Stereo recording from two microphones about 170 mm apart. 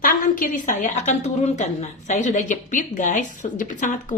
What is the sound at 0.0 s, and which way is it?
A woman's voice, 50° left (ahead or behind).